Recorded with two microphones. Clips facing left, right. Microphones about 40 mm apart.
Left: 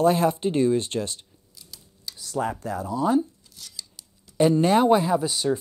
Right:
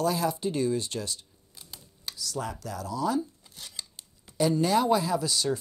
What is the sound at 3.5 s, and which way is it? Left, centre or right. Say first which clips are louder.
Scissors: even; right.